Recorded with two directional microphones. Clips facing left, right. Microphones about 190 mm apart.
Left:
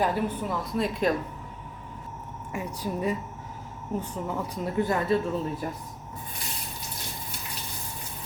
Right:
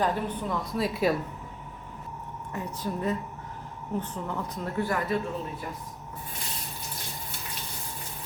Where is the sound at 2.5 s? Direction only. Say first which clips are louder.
Left 1 dB; 10° left (ahead or behind).